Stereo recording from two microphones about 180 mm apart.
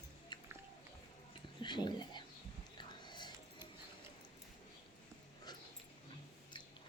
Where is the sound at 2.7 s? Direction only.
25° left (ahead or behind).